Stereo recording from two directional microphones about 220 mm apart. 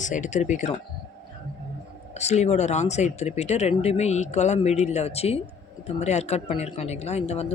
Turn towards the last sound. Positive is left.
turn(degrees=30)  # may be behind; listen again after turning